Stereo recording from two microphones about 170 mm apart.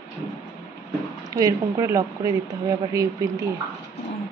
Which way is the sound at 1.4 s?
20° right (ahead or behind).